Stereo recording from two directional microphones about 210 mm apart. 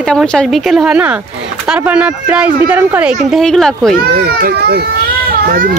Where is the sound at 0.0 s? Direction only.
5° left (ahead or behind).